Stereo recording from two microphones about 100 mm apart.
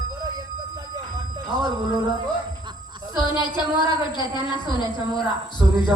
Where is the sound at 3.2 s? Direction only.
50° left (ahead or behind).